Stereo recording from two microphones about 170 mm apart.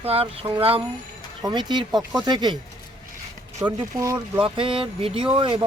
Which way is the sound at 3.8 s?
20° right (ahead or behind).